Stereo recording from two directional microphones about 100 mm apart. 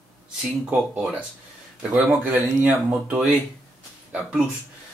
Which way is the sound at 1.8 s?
15° right (ahead or behind).